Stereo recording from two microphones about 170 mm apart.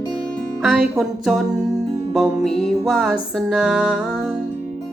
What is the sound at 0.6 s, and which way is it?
Music, centre (ahead or behind).